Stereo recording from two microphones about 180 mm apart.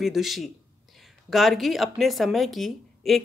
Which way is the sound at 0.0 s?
Centre (ahead or behind).